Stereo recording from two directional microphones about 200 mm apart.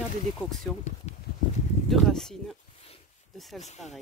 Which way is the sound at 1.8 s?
Centre (ahead or behind).